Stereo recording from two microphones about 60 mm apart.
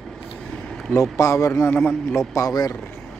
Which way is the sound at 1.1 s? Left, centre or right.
Left.